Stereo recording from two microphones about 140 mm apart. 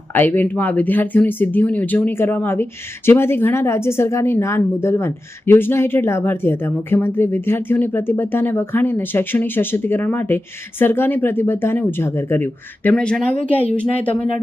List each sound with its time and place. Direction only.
0.1 s a woman's voice: 15° left (ahead or behind)